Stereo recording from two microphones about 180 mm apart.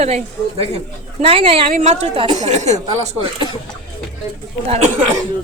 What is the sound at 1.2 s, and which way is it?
A woman's voice, 30° right (ahead or behind).